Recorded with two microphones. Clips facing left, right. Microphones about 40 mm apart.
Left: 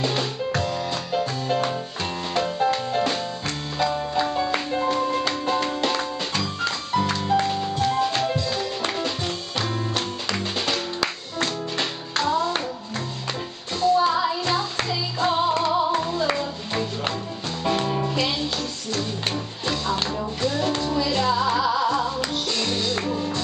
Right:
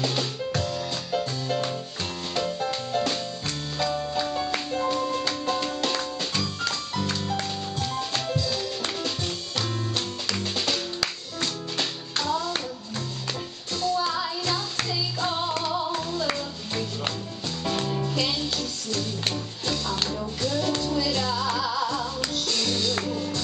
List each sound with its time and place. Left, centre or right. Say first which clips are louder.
0.0 s music: left 3 dB; centre
13.7 s music: left 7 dB; centre
19.6 s music: left 3 dB; centre